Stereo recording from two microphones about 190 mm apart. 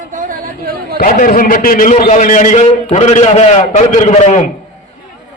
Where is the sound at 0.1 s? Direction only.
45° right (ahead or behind).